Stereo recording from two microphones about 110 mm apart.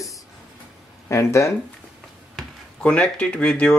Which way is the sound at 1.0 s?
25° left (ahead or behind).